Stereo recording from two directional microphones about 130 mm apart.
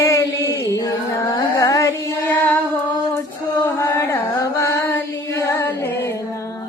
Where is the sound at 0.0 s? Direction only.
20° left (ahead or behind).